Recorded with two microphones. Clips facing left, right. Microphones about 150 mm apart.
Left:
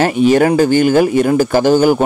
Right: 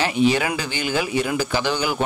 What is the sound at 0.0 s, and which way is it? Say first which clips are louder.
Speech: left 8 dB; 50° left (ahead or behind).